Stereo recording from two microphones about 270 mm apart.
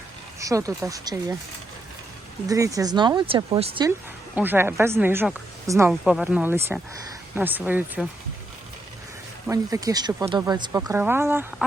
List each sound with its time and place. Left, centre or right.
0.3 s speech: centre
2.5 s speech: centre
9.5 s speech: centre